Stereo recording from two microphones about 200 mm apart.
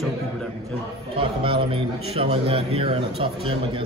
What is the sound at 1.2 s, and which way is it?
A man's voice, 25° right (ahead or behind).